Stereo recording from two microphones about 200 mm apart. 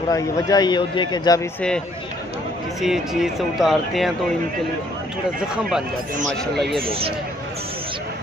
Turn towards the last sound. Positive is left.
turn(degrees=0)  # may be behind; listen again after turning